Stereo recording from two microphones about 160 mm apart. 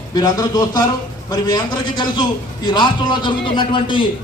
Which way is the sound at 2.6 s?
30° left (ahead or behind).